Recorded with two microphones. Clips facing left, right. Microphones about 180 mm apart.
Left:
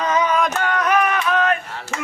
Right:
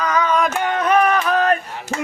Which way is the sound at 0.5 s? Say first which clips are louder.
Right 2 dB; 20° right (ahead or behind).